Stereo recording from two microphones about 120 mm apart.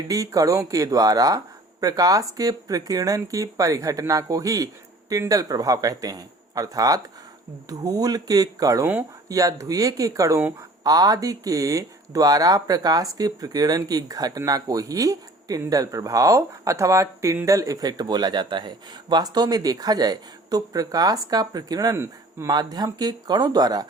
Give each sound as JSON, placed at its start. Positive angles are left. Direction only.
{"t": 0.1, "sound": "speech", "side_deg": -30}
{"t": 21.9, "sound": "speech", "side_deg": -20}
{"t": 22.4, "sound": "speech", "side_deg": -35}